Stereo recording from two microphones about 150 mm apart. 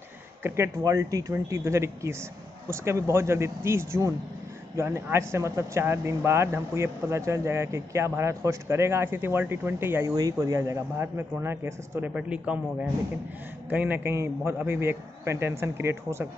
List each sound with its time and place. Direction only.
0.4 s speech: 20° right (ahead or behind)
13.7 s speech: 10° right (ahead or behind)